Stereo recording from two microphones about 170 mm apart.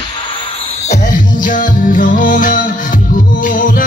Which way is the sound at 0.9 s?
50° left (ahead or behind).